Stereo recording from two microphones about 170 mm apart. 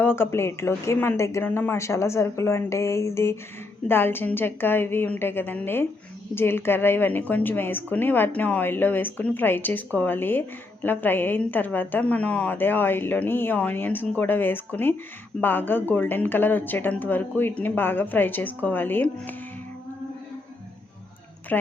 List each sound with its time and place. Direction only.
0.0 s a woman's voice: 15° left (ahead or behind)
21.5 s a woman's voice: 5° left (ahead or behind)